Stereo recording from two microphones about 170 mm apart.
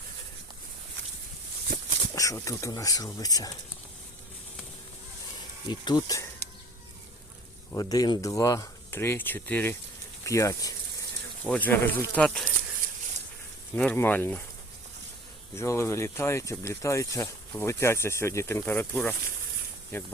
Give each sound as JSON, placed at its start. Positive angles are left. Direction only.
{"t": 2.1, "sound": "speech", "side_deg": 20}
{"t": 5.6, "sound": "speech", "side_deg": 25}
{"t": 7.7, "sound": "speech", "side_deg": 20}
{"t": 11.4, "sound": "speech", "side_deg": 10}
{"t": 13.7, "sound": "speech", "side_deg": 10}
{"t": 15.5, "sound": "speech", "side_deg": 15}